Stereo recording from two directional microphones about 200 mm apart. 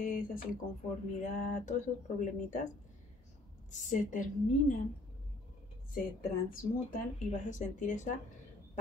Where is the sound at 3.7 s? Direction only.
40° left (ahead or behind).